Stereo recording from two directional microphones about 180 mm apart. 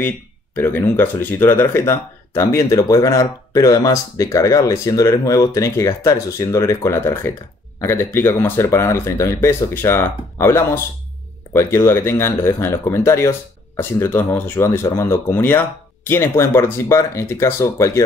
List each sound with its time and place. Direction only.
0.6 s speech: 10° left (ahead or behind)